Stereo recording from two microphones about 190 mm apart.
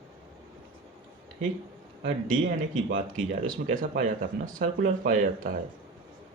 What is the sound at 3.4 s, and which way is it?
Speech, 45° right (ahead or behind).